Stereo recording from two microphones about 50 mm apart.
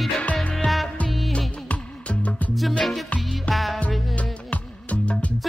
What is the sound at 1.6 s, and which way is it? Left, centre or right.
Music, left.